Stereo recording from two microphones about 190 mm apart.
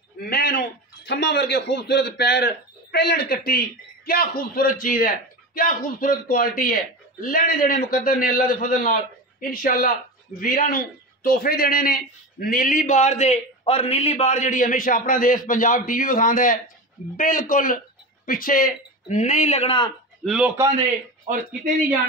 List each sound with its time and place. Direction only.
0.2 s a man's voice: 55° left (ahead or behind); by 19.9 s 30° left (ahead or behind)
20.2 s a man's voice: 5° right (ahead or behind)
21.3 s speech: 45° right (ahead or behind)